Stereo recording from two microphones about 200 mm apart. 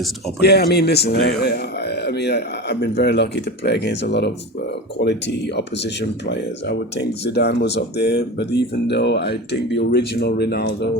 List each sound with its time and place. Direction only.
0.3 s speech: 55° left (ahead or behind)